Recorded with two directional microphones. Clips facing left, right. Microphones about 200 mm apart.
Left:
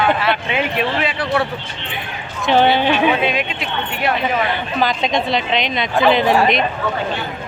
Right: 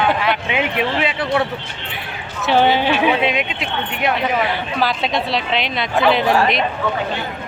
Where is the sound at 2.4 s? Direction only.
10° right (ahead or behind).